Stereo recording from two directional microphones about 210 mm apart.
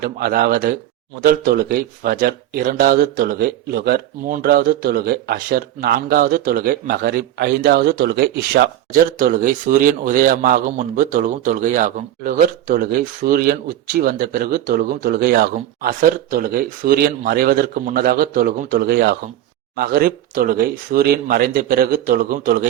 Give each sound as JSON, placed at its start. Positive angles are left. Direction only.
{"t": 0.0, "sound": "speech", "side_deg": -45}